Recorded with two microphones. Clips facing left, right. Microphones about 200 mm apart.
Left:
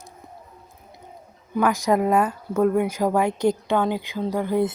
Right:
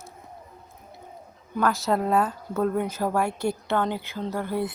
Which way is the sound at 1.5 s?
15° left (ahead or behind).